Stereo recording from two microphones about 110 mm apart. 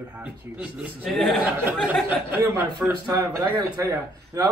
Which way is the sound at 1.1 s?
Centre (ahead or behind).